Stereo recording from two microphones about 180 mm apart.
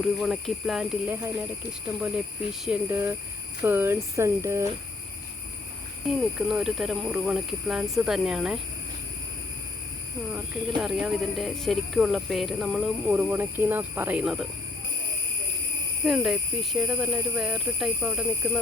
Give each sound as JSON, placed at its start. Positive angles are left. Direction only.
{"t": 0.0, "sound": "speech", "side_deg": 0}
{"t": 2.6, "sound": "speech", "side_deg": -10}
{"t": 6.1, "sound": "speech", "side_deg": 0}
{"t": 10.3, "sound": "speech", "side_deg": -5}
{"t": 13.1, "sound": "speech", "side_deg": -15}
{"t": 16.0, "sound": "speech", "side_deg": -5}